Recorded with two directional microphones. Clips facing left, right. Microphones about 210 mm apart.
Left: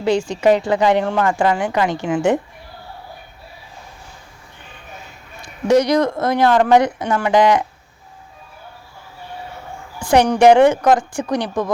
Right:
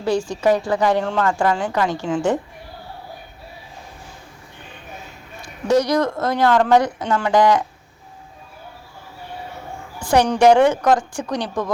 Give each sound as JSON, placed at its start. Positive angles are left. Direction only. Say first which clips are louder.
{"t": 0.0, "sound": "speech", "louder": "left 3 dB", "side_deg": 20}
{"t": 5.6, "sound": "speech", "louder": "left 3 dB", "side_deg": 15}
{"t": 10.2, "sound": "speech", "louder": "left 2 dB", "side_deg": 15}